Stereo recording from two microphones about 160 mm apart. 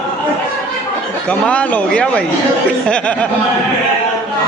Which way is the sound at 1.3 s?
10° left (ahead or behind).